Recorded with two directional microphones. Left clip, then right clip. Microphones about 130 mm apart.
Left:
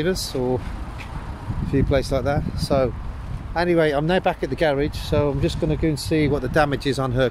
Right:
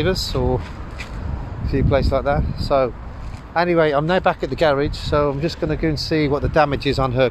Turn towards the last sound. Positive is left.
turn(degrees=20)  # may be behind; listen again after turning